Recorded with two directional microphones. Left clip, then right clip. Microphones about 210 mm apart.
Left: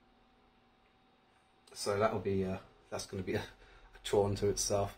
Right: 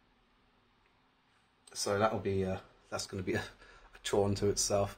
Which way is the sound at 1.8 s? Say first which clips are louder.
Right 1 dB; 35° right (ahead or behind).